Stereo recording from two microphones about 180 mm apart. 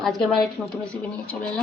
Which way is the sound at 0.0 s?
Centre (ahead or behind).